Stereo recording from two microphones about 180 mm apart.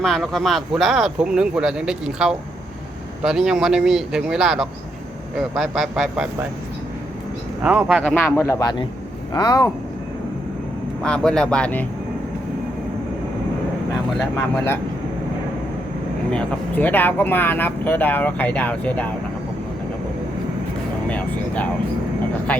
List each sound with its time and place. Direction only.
0.0 s speech: centre (ahead or behind)
7.6 s speech: 5° right (ahead or behind)
8.1 s speech: 10° left (ahead or behind)
11.0 s speech: 5° left (ahead or behind)
14.3 s speech: 15° left (ahead or behind)
16.3 s speech: 5° left (ahead or behind)
21.1 s vehicle: 10° left (ahead or behind)